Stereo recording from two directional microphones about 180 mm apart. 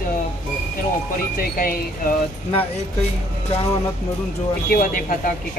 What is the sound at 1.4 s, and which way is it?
Speech, 55° left (ahead or behind).